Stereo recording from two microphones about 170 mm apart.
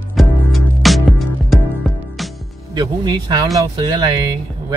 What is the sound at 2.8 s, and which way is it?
Speech, 25° right (ahead or behind).